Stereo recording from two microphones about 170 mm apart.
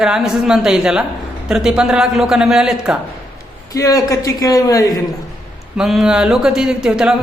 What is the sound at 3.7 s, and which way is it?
A man's voice, 20° left (ahead or behind).